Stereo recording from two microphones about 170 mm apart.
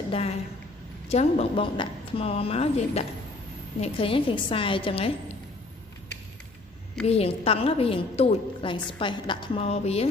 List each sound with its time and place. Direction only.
0.1 s a woman's voice: 35° left (ahead or behind)
7.1 s a woman's voice: 35° left (ahead or behind)